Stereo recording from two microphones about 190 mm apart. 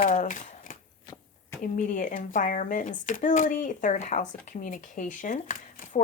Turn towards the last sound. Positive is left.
turn(degrees=45)  # may be behind; listen again after turning